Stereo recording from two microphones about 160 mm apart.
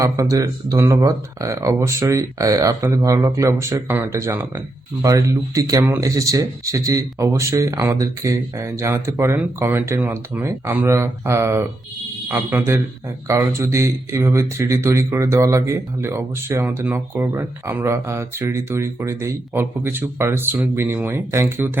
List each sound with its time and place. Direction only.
0.0 s speech: 20° right (ahead or behind)